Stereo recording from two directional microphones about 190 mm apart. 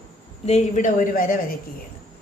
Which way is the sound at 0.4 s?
35° left (ahead or behind).